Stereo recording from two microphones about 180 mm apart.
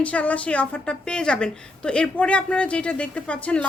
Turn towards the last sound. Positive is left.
turn(degrees=5)  # may be behind; listen again after turning